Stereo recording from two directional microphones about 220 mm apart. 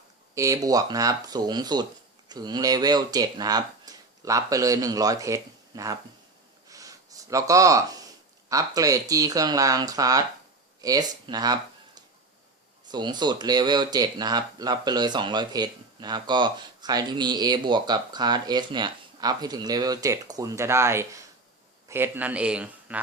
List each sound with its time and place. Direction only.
0.3 s speech: 15° right (ahead or behind)
6.7 s gasp: 15° right (ahead or behind)
8.4 s speech: 15° right (ahead or behind)
10.8 s a sound: 15° right (ahead or behind)
12.9 s a man's voice: 20° right (ahead or behind)